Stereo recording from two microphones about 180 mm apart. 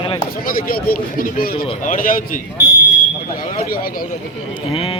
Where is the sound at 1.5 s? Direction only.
30° left (ahead or behind).